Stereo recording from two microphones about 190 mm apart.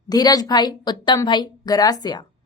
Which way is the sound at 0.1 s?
20° left (ahead or behind).